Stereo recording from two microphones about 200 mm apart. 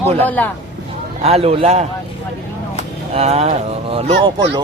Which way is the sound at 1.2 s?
30° right (ahead or behind).